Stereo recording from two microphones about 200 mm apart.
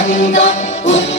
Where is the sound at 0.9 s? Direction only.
65° left (ahead or behind).